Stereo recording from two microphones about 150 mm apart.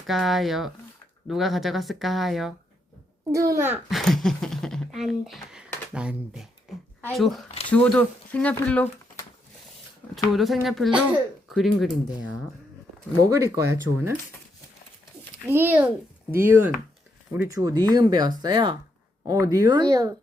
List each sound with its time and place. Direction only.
0.1 s speech: centre (ahead or behind)
3.3 s speech: 20° right (ahead or behind)
3.8 s speech: centre (ahead or behind)
10.3 s speech: centre (ahead or behind)
13.2 s speech: 20° right (ahead or behind)
15.4 s a child's voice: 15° right (ahead or behind); by 18.8 s 30° right (ahead or behind)
19.2 s speech: 20° right (ahead or behind)